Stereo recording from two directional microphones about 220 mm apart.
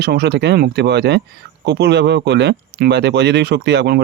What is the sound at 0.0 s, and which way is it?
Speech, 50° right (ahead or behind).